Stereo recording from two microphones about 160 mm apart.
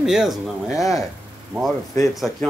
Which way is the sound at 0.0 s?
5° right (ahead or behind).